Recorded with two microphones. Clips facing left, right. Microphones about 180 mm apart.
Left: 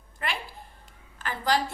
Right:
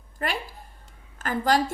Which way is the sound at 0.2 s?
40° right (ahead or behind).